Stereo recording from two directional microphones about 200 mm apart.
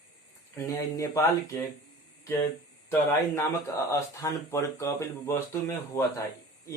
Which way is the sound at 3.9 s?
15° left (ahead or behind).